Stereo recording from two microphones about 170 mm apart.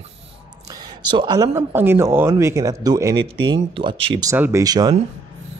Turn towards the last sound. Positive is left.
turn(degrees=-25)  # may be behind; listen again after turning